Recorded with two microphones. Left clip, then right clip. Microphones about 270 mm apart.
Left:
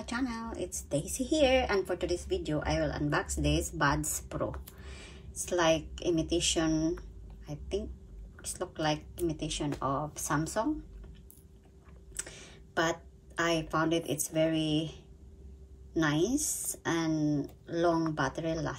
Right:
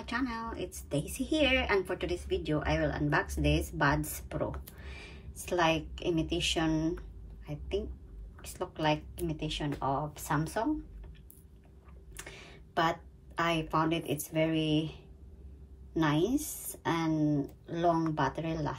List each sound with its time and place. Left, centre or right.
0.0 s a woman's voice: centre
12.2 s a woman's voice: centre